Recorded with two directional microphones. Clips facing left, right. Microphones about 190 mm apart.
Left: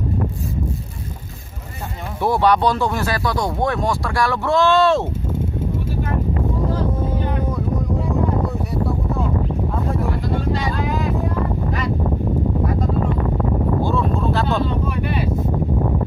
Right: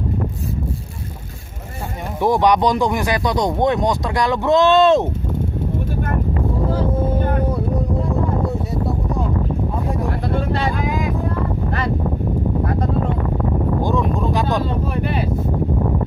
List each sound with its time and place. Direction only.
2.1 s speech: 15° right (ahead or behind)
7.1 s boat: 50° right (ahead or behind)
13.8 s a sound: 15° right (ahead or behind)